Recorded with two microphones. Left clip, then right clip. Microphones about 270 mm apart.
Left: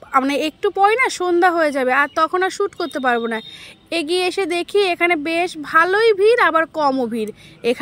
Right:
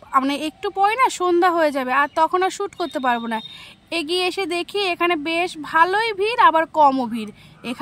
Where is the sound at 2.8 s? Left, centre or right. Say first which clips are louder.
Left 1 dB; right.